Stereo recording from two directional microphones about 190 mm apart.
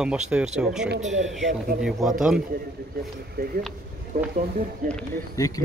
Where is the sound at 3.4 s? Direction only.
50° right (ahead or behind).